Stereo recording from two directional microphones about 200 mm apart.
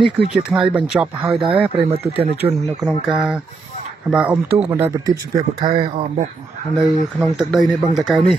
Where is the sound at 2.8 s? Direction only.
Centre (ahead or behind); by 5.8 s 20° right (ahead or behind).